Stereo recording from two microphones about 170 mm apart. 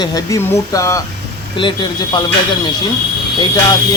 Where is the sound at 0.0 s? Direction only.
20° left (ahead or behind).